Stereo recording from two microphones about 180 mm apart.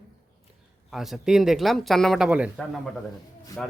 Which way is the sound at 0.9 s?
Centre (ahead or behind).